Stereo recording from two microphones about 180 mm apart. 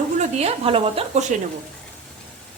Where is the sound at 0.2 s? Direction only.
35° right (ahead or behind).